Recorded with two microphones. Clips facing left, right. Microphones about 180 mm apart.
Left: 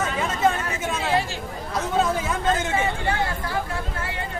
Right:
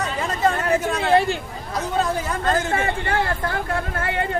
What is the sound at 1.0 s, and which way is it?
Speech, 60° right (ahead or behind).